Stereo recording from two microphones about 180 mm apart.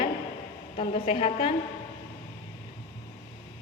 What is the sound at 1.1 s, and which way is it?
Speech, 35° left (ahead or behind).